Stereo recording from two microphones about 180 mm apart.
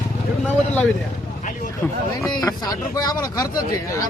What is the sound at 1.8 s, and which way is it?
Speech, 10° left (ahead or behind).